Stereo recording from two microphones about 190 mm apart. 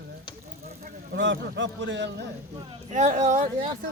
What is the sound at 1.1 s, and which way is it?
A man's voice, 75° right (ahead or behind).